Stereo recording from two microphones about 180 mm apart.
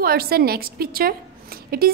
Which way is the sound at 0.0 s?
55° right (ahead or behind).